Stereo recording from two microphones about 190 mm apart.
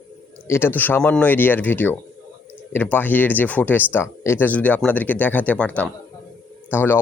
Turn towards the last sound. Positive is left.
turn(degrees=10)  # may be behind; listen again after turning